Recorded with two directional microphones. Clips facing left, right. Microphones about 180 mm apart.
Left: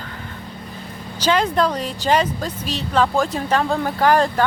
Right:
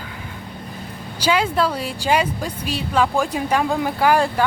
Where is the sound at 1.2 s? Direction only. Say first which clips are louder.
Left 1 dB; 10° right (ahead or behind).